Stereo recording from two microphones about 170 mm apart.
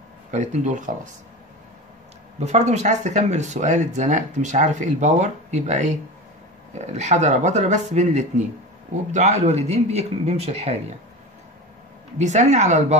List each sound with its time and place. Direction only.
0.3 s speech: 45° right (ahead or behind)
2.4 s a man's voice: 40° right (ahead or behind)
12.2 s speech: 45° right (ahead or behind)